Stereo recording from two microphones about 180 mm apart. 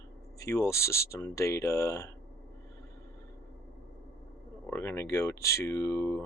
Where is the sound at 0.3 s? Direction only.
15° left (ahead or behind).